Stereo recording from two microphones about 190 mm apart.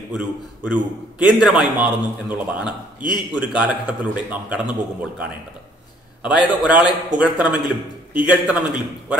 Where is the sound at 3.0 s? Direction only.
25° left (ahead or behind).